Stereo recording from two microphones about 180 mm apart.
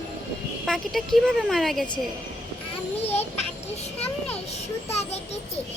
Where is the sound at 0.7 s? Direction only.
Centre (ahead or behind).